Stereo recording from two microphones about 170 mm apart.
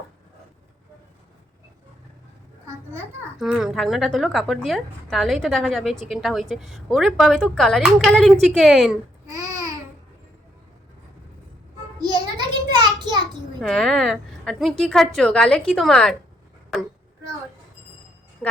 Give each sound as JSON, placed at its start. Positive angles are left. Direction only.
{"t": 3.3, "sound": "a woman's voice", "side_deg": -5}
{"t": 9.3, "sound": "babbling", "side_deg": -20}
{"t": 11.9, "sound": "child singing", "side_deg": -25}
{"t": 13.6, "sound": "a woman's voice", "side_deg": 0}